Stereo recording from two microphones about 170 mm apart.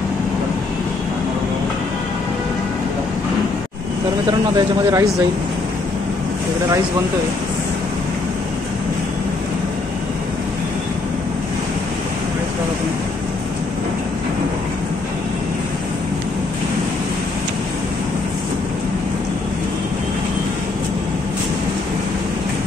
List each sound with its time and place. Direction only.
4.3 s a man's voice: 20° right (ahead or behind)